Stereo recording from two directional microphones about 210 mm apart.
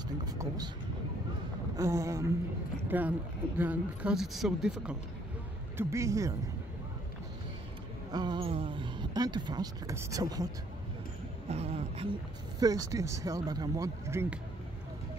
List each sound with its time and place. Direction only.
0.2 s speech: 20° right (ahead or behind)
1.8 s speech: 15° right (ahead or behind)
5.8 s speech: 15° right (ahead or behind)
8.1 s speech: 20° right (ahead or behind)
11.4 s speech: 30° right (ahead or behind)
12.5 s speech: 15° right (ahead or behind)